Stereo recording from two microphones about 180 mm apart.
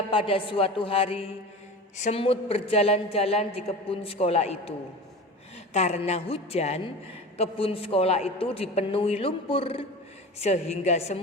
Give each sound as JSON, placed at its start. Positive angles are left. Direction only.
{"t": 0.1, "sound": "a woman's voice", "side_deg": 30}
{"t": 5.7, "sound": "a woman's voice", "side_deg": 35}